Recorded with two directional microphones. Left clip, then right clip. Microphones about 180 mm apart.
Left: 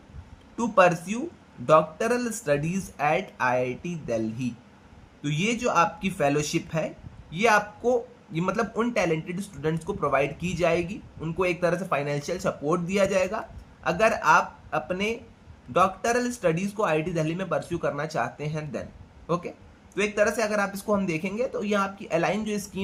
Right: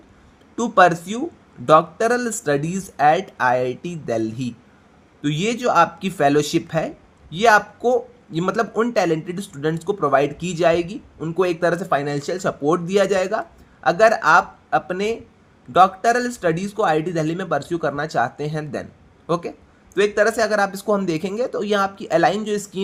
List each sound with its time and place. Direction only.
0.5 s speech: 35° right (ahead or behind)